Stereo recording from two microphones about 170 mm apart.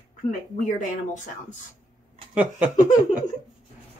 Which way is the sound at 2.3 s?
10° right (ahead or behind).